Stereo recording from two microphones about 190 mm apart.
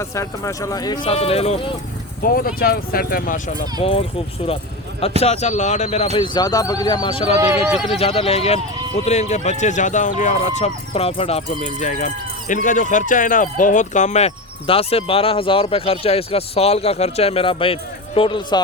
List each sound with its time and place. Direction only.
0.0 s speech: 15° left (ahead or behind)
1.0 s speech: 30° left (ahead or behind)
2.2 s speech: 50° left (ahead or behind)
3.8 s speech: 30° left (ahead or behind)
5.2 s speech: 35° left (ahead or behind)
6.1 s speech: 25° left (ahead or behind)
7.3 s speech: 15° right (ahead or behind)
7.9 s speech: 30° left (ahead or behind)